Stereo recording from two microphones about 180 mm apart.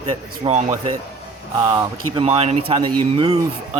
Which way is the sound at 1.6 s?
25° right (ahead or behind).